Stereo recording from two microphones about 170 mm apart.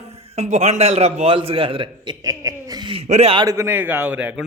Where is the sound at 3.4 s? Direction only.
20° right (ahead or behind).